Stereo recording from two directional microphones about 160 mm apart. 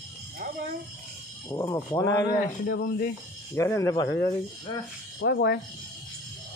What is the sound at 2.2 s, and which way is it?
Speech, 65° left (ahead or behind).